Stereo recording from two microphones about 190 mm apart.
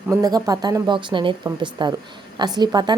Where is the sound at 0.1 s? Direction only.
20° right (ahead or behind).